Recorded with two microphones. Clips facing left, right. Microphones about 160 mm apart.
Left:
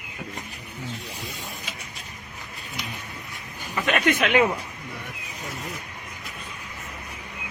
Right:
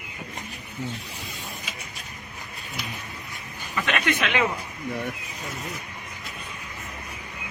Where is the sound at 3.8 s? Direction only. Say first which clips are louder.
Left 4 dB; 40° left (ahead or behind).